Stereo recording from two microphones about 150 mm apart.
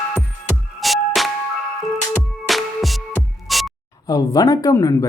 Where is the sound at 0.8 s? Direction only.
Centre (ahead or behind).